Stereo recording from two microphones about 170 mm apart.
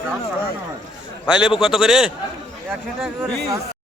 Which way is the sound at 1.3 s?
5° right (ahead or behind).